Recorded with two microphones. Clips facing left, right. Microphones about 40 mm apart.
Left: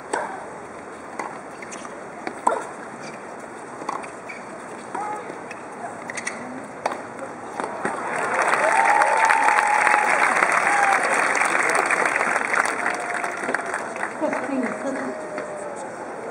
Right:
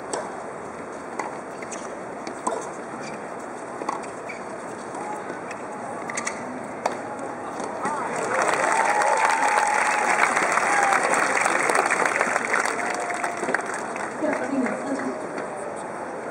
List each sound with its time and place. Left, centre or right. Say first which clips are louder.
2.5 s dog: left 6 dB; left
7.5 s skateboard: left 2 dB; centre
8.0 s crowd: left 2 dB; centre
9.4 s applause: left 3 dB; centre